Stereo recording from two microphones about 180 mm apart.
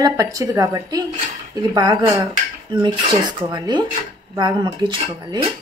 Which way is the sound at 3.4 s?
25° right (ahead or behind).